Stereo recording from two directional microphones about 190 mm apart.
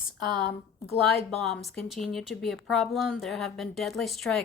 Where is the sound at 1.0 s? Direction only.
Centre (ahead or behind).